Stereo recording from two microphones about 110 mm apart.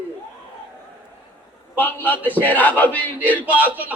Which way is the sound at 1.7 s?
15° left (ahead or behind).